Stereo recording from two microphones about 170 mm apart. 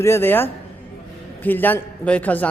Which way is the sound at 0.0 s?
15° left (ahead or behind).